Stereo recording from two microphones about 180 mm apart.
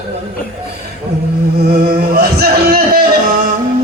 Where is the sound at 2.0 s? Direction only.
60° right (ahead or behind).